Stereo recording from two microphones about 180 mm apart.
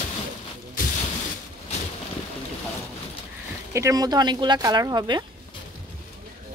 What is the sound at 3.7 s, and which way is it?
Speech, 20° right (ahead or behind).